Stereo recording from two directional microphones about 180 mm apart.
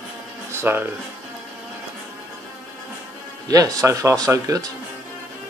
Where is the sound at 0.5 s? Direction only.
10° right (ahead or behind).